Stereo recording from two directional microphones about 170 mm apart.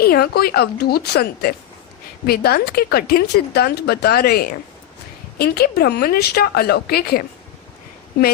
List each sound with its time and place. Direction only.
0.0 s a woman's voice: 65° left (ahead or behind)